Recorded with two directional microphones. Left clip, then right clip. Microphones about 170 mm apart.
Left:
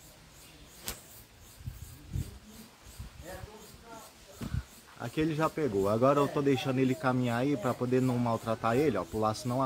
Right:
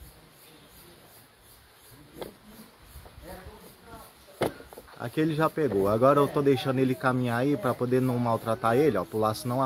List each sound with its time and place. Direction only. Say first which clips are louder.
4.9 s speech: right 4 dB; 40° right (ahead or behind)